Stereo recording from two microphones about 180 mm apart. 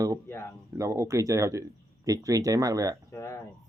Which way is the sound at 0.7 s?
15° right (ahead or behind).